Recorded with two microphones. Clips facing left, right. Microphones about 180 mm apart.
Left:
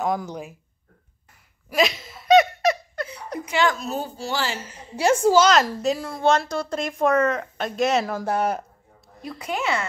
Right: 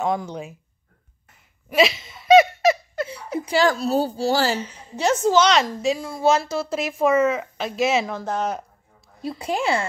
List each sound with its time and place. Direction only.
0.0 s a woman's voice: centre (ahead or behind)
1.8 s a sound: centre (ahead or behind)
3.3 s a woman's voice: 35° right (ahead or behind)
4.6 s a woman's voice: 5° left (ahead or behind)
9.2 s a woman's voice: 30° right (ahead or behind)